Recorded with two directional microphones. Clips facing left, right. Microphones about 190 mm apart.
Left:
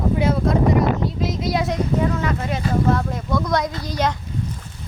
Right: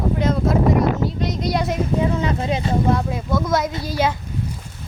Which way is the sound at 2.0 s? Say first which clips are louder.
Right 2 dB; 20° right (ahead or behind).